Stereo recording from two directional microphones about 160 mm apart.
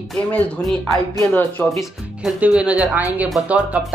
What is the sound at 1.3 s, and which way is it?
Speech, 20° left (ahead or behind).